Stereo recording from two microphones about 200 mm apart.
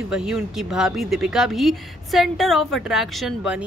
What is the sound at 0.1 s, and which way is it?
A woman's voice, 5° right (ahead or behind).